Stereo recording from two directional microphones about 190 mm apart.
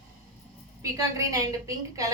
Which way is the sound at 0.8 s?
15° right (ahead or behind).